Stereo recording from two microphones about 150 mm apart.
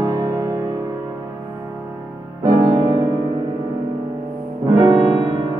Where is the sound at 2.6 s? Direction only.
35° right (ahead or behind).